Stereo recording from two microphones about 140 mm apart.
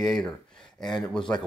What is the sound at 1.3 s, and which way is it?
Speech, 15° left (ahead or behind).